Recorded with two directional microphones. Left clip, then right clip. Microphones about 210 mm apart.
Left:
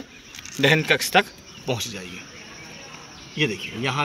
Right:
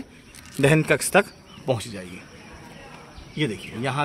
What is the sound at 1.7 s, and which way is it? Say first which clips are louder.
Speech: right 1 dB; 25° right (ahead or behind).